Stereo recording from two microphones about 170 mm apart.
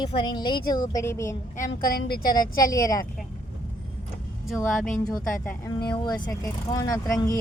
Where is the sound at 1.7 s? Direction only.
60° left (ahead or behind).